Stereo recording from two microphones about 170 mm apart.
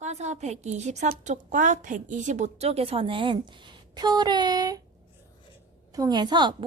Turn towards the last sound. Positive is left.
turn(degrees=-25)  # may be behind; listen again after turning